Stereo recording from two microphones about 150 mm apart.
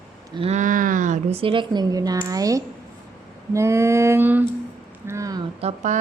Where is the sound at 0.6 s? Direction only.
60° right (ahead or behind).